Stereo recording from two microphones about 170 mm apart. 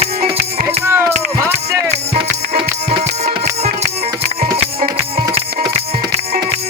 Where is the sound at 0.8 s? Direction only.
15° right (ahead or behind).